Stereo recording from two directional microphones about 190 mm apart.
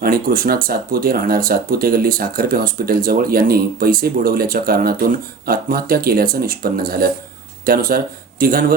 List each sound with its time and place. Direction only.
0.0 s speech: 50° right (ahead or behind)